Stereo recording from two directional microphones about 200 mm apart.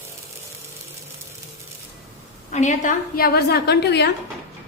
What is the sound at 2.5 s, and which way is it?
A woman's voice, 40° left (ahead or behind).